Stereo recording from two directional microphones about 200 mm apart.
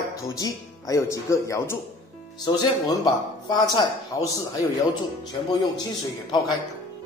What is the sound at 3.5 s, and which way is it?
Speech, 20° left (ahead or behind).